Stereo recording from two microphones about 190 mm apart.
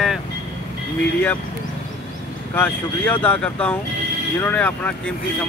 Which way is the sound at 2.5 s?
10° left (ahead or behind).